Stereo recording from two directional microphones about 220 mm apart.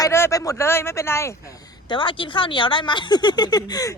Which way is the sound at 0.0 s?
15° left (ahead or behind).